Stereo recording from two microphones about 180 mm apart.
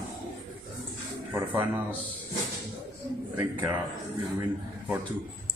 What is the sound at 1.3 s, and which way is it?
Speech, 10° right (ahead or behind).